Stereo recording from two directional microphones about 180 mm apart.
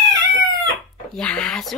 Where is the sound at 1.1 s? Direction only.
5° left (ahead or behind).